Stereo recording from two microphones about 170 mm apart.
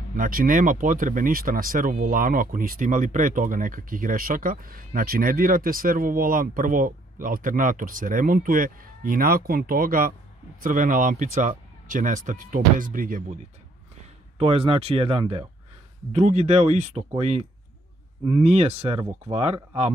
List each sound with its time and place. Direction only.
0.1 s speech: 55° right (ahead or behind)
14.4 s speech: 35° right (ahead or behind)